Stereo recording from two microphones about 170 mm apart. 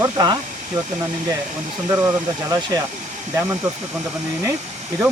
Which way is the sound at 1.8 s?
20° right (ahead or behind).